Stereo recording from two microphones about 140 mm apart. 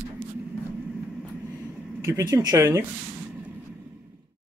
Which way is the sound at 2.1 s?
20° right (ahead or behind).